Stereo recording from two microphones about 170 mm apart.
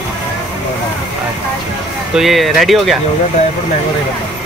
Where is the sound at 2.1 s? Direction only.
Centre (ahead or behind).